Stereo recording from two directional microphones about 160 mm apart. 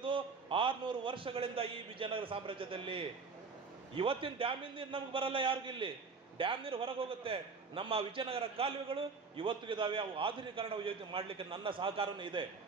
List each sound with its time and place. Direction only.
0.0 s a man's voice: 30° right (ahead or behind)